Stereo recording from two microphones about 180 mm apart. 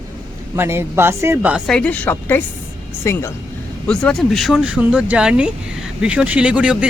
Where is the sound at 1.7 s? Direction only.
5° left (ahead or behind).